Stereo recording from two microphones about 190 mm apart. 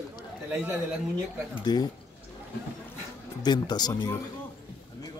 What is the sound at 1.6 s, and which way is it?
Speech, 20° left (ahead or behind).